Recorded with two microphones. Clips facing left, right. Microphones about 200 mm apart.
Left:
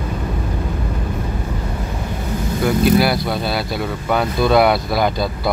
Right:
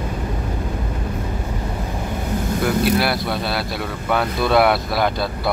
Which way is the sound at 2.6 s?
Centre (ahead or behind).